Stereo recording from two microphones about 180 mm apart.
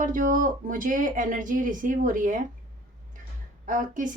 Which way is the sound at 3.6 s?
45° right (ahead or behind).